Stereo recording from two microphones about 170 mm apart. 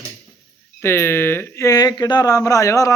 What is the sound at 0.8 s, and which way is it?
Speech, 15° left (ahead or behind).